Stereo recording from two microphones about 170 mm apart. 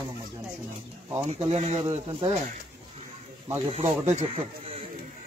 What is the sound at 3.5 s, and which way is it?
Speech, 40° right (ahead or behind).